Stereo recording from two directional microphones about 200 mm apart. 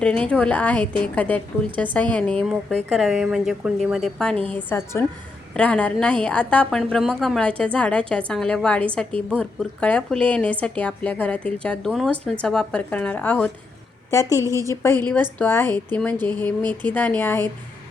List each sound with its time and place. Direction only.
0.0 s a woman's voice: 5° left (ahead or behind)